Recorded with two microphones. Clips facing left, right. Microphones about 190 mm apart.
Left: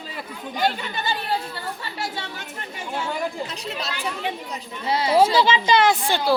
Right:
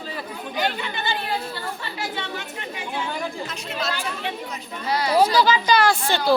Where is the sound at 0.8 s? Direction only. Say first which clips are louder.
Even; 40° left (ahead or behind).